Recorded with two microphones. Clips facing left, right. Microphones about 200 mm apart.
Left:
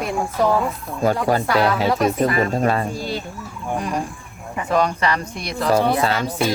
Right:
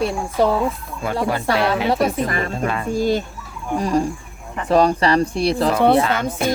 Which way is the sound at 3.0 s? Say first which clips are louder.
Right 8 dB; 45° right (ahead or behind).